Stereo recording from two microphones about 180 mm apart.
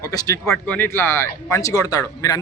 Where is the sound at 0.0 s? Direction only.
20° left (ahead or behind).